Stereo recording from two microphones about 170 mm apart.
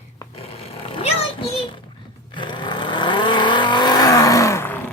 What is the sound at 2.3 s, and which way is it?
Vehicle, 30° left (ahead or behind).